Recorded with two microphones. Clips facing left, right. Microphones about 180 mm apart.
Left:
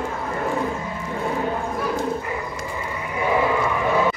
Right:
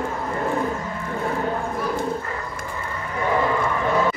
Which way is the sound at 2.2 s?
10° left (ahead or behind).